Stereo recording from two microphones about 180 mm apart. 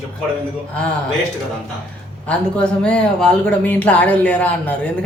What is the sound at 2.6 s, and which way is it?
Speech, 5° left (ahead or behind).